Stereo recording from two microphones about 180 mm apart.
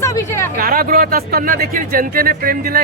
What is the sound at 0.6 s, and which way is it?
Speech, 55° right (ahead or behind).